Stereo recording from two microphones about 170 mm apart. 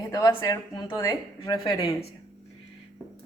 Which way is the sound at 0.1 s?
20° left (ahead or behind).